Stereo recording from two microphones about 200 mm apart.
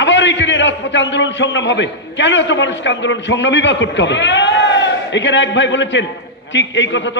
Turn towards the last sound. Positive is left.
turn(degrees=65)  # may be behind; listen again after turning